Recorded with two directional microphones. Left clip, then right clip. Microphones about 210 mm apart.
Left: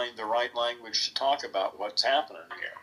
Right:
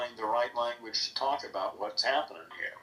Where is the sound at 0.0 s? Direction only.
35° left (ahead or behind).